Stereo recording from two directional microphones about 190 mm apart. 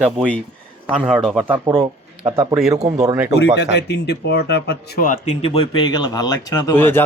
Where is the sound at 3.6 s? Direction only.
60° left (ahead or behind).